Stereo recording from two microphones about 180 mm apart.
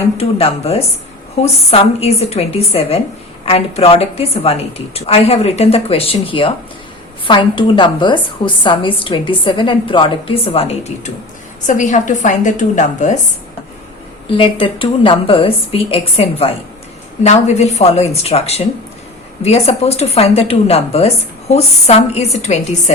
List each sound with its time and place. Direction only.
0.2 s a woman's voice: 35° left (ahead or behind)
14.3 s a woman's voice: 30° left (ahead or behind)